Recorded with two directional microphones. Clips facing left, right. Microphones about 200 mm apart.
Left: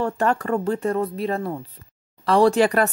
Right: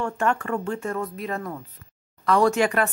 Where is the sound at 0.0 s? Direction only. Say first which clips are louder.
Left 3 dB; 35° left (ahead or behind).